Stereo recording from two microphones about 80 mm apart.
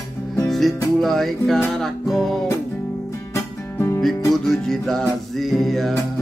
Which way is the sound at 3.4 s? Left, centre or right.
Left.